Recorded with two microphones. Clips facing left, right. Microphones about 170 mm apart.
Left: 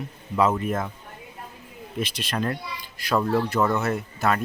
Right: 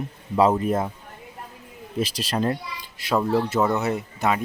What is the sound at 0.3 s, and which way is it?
Speech, 35° right (ahead or behind).